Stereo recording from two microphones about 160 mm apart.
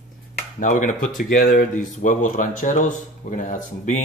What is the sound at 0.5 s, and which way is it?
Speech, 55° left (ahead or behind).